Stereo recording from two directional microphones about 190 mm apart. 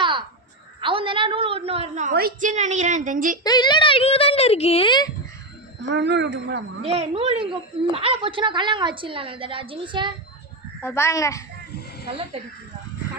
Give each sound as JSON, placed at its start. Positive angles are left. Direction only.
{"t": 0.0, "sound": "a sound", "side_deg": -25}
{"t": 0.8, "sound": "a woman's voice", "side_deg": -25}
{"t": 2.1, "sound": "a woman's voice", "side_deg": -45}
{"t": 3.4, "sound": "speech", "side_deg": 20}
{"t": 5.9, "sound": "speech", "side_deg": -65}
{"t": 6.8, "sound": "a woman's voice", "side_deg": -30}
{"t": 10.8, "sound": "a child's voice", "side_deg": 15}
{"t": 12.4, "sound": "a woman's voice", "side_deg": -30}